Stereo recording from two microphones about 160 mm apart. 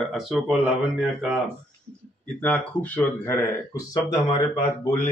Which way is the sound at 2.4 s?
10° left (ahead or behind).